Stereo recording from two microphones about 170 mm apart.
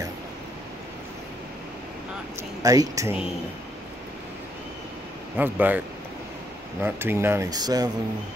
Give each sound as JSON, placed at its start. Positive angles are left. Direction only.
{"t": 2.6, "sound": "speech", "side_deg": -20}
{"t": 5.4, "sound": "speech", "side_deg": -10}
{"t": 6.8, "sound": "speech", "side_deg": -15}